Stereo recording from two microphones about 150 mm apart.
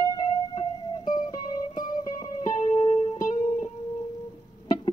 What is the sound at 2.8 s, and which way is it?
Music, 45° left (ahead or behind).